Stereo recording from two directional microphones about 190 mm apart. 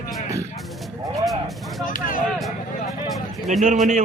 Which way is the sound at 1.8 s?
45° left (ahead or behind).